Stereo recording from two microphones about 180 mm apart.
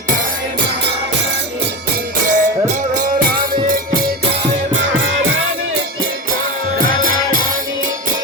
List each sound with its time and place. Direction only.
2.2 s music: 45° right (ahead or behind)
6.7 s music: 50° right (ahead or behind)